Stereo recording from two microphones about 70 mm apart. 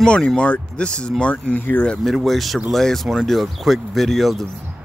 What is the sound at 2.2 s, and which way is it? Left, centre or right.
Speech, centre.